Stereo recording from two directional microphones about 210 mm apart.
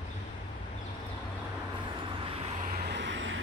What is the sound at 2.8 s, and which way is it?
Vehicle, 55° right (ahead or behind).